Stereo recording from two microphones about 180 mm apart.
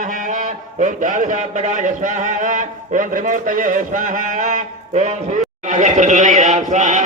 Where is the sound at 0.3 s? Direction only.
45° right (ahead or behind).